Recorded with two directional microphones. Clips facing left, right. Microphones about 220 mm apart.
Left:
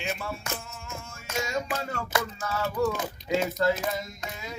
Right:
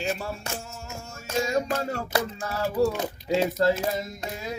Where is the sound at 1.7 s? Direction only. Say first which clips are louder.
Right 3 dB; 35° right (ahead or behind).